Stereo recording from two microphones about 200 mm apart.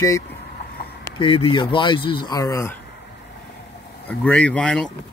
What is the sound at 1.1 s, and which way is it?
Speech, 25° left (ahead or behind).